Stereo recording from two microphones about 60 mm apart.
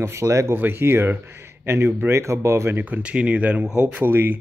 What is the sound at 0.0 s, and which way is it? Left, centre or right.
Speech, right.